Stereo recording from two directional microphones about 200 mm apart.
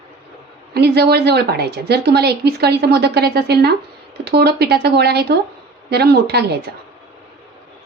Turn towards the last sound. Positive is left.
turn(degrees=-55)  # may be behind; listen again after turning